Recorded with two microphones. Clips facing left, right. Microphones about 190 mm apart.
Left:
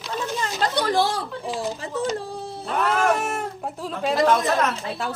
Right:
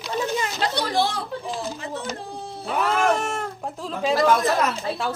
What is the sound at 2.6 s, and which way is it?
Speech, centre (ahead or behind).